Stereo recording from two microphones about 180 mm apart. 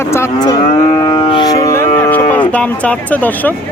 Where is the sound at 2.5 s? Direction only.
5° left (ahead or behind).